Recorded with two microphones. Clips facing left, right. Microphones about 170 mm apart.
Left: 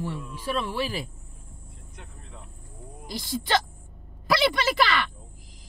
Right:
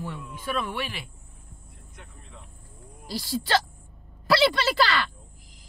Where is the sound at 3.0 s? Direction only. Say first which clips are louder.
Right 1 dB; 20° left (ahead or behind).